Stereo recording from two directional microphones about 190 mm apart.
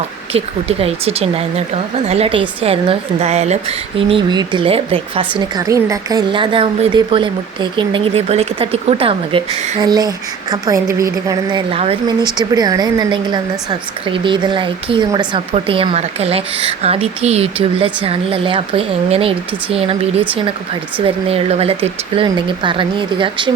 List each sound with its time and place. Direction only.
0.3 s speech: 30° right (ahead or behind)
5.5 s a woman's voice: 15° right (ahead or behind)
11.7 s a woman's voice: 30° right (ahead or behind)